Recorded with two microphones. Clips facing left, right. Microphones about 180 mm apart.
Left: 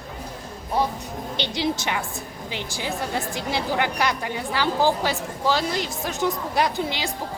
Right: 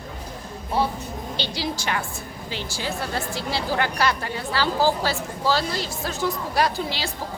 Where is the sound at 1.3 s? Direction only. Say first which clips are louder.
Left 4 dB; 20° left (ahead or behind).